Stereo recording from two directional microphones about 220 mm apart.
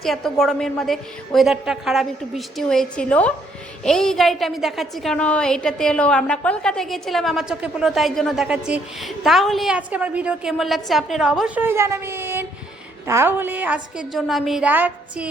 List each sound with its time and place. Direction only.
0.0 s a woman's voice: centre (ahead or behind)